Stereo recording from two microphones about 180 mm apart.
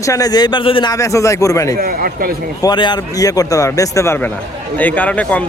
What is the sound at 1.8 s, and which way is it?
Speech, 55° right (ahead or behind).